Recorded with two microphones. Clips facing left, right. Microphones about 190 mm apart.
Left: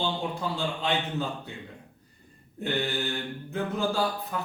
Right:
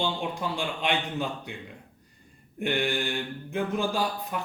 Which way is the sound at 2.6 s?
15° right (ahead or behind).